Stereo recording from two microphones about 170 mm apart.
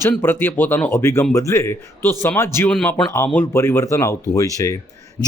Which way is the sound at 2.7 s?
5° left (ahead or behind).